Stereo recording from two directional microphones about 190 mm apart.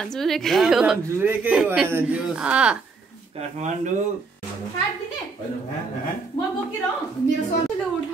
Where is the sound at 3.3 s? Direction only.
40° right (ahead or behind).